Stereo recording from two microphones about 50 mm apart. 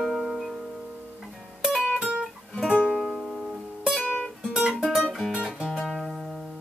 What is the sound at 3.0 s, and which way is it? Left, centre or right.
Music, centre.